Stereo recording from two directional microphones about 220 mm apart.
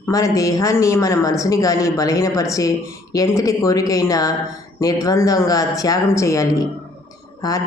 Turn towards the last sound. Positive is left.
turn(degrees=15)  # may be behind; listen again after turning